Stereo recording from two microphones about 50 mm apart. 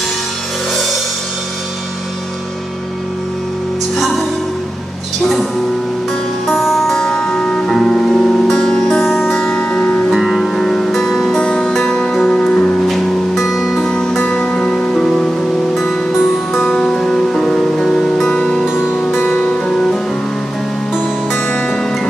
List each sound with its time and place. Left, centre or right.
3.9 s music: centre
6.4 s music: centre
7.0 s music: centre
10.1 s music: centre
11.3 s music: left
11.9 s music: centre
12.4 s music: left
12.8 s music: centre
13.8 s music: centre
15.7 s music: centre
16.9 s music: centre
18.3 s music: left
19.0 s music: left